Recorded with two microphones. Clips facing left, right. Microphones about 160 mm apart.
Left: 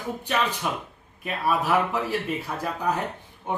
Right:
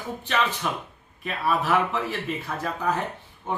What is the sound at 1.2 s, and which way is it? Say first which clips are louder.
A man's voice: even; 10° left (ahead or behind).